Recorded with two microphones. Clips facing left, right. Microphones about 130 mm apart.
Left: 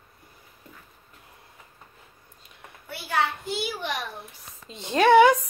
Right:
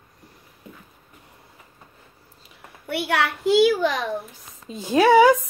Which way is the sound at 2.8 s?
70° right (ahead or behind).